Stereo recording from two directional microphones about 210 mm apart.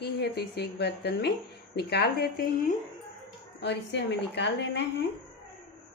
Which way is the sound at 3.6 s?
55° left (ahead or behind).